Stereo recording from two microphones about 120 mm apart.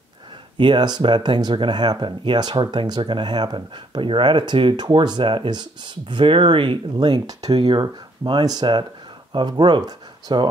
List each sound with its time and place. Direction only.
0.6 s speech: 40° right (ahead or behind)